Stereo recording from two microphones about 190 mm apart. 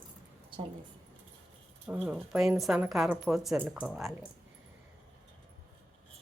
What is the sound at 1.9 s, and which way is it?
Speech, 10° right (ahead or behind).